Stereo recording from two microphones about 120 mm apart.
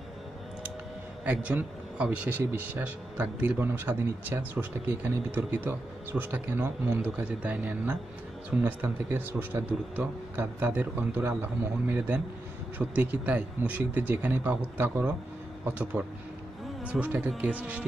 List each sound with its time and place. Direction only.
1.2 s a man's voice: 10° right (ahead or behind)